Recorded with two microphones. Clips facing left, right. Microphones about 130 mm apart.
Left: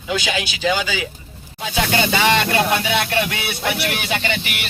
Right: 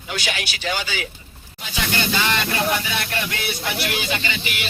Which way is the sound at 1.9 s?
75° left (ahead or behind).